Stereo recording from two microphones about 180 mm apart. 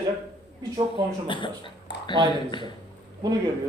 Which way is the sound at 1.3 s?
25° left (ahead or behind).